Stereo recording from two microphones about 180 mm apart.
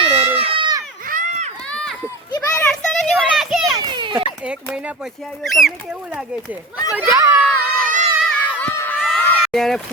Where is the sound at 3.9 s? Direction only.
25° right (ahead or behind).